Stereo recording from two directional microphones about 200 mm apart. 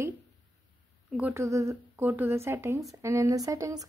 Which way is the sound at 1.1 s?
10° right (ahead or behind).